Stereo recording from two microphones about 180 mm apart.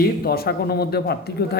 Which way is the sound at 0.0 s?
60° left (ahead or behind).